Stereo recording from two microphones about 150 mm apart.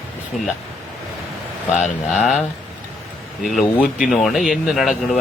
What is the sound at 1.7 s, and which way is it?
Speech, 55° left (ahead or behind).